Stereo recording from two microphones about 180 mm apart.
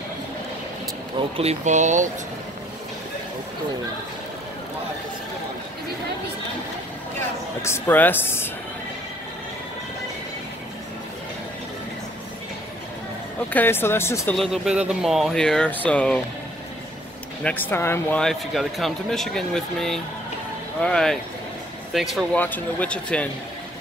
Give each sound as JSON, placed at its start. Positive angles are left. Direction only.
{"t": 1.3, "sound": "speech", "side_deg": -35}
{"t": 7.6, "sound": "speech", "side_deg": 15}
{"t": 13.5, "sound": "speech", "side_deg": 10}
{"t": 14.3, "sound": "speech", "side_deg": 0}
{"t": 17.4, "sound": "speech", "side_deg": 10}
{"t": 18.2, "sound": "speech", "side_deg": 0}